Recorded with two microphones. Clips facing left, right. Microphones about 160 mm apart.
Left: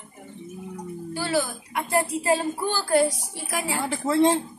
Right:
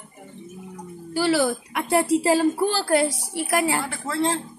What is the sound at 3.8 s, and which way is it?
Speech, 20° left (ahead or behind).